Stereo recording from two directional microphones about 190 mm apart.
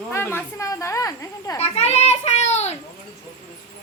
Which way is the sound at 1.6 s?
35° left (ahead or behind).